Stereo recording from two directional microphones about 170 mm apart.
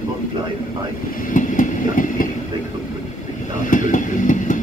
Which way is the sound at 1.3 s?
50° left (ahead or behind).